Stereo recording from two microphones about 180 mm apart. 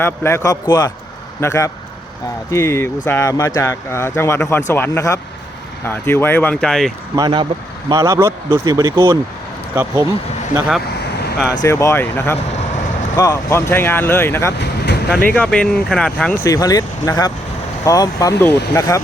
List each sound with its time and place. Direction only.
0.0 s speech: 15° left (ahead or behind)
7.2 s speech: 25° right (ahead or behind)
11.6 s speech: 15° left (ahead or behind)
14.6 s vehicle: 65° left (ahead or behind)
15.2 s speech: 5° left (ahead or behind)
16.4 s speech: 20° left (ahead or behind)